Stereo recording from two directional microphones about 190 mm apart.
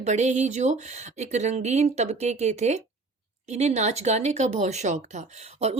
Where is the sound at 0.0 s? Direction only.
40° right (ahead or behind).